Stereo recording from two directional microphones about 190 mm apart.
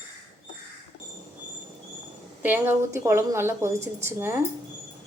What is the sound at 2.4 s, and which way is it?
Speech, 10° right (ahead or behind).